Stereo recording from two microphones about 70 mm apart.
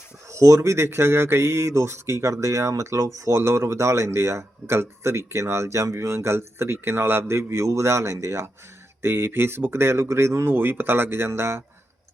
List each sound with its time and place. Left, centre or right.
0.3 s speech: right